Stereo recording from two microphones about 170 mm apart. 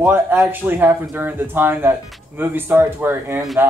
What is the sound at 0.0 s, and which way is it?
Speech, 10° right (ahead or behind).